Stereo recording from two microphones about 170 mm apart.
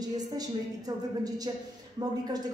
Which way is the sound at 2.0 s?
25° right (ahead or behind).